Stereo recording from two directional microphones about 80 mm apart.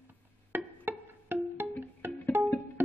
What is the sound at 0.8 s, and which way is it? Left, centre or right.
Music, right.